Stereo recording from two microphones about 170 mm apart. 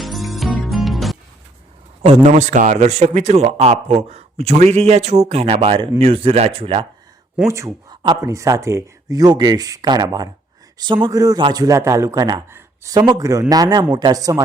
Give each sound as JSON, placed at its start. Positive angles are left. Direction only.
{"t": 0.0, "sound": "music", "side_deg": 0}
{"t": 2.0, "sound": "speech", "side_deg": -45}
{"t": 7.4, "sound": "a man's voice", "side_deg": -15}